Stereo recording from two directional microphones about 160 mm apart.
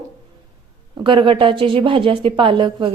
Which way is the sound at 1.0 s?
30° right (ahead or behind).